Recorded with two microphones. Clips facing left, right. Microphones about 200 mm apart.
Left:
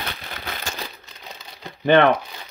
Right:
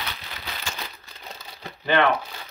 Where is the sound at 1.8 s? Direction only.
55° left (ahead or behind).